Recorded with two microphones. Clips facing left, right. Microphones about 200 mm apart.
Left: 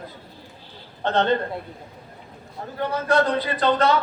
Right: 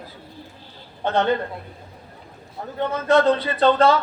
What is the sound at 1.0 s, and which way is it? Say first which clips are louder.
Speech: right 1 dB; 10° right (ahead or behind).